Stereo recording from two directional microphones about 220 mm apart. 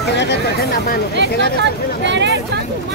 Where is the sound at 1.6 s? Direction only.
55° right (ahead or behind).